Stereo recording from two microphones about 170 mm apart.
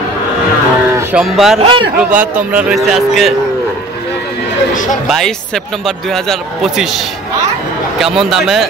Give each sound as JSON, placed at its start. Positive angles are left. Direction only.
{"t": 1.1, "sound": "speech", "side_deg": 0}
{"t": 1.6, "sound": "a man's voice", "side_deg": -30}
{"t": 2.0, "sound": "speech", "side_deg": -5}
{"t": 5.0, "sound": "speech", "side_deg": 0}
{"t": 8.0, "sound": "speech", "side_deg": 0}